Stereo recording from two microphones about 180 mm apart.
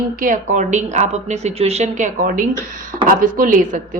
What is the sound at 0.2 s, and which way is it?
A woman's voice, 45° right (ahead or behind).